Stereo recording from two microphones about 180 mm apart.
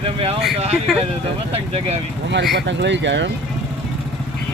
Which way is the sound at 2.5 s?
75° right (ahead or behind).